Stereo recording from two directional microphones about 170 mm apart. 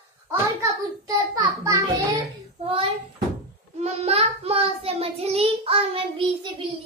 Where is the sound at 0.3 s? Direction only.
20° right (ahead or behind).